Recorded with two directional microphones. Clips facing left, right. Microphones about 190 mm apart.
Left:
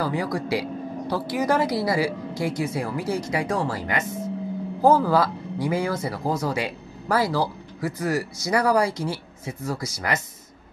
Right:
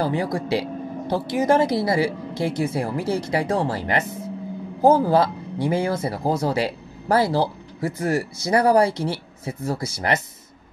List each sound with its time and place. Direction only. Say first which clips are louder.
0.0 s speech: right 2 dB; 25° right (ahead or behind)
4.8 s speech: right 2 dB; 20° right (ahead or behind)